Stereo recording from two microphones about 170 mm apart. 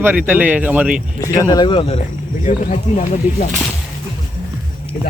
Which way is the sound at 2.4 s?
45° left (ahead or behind).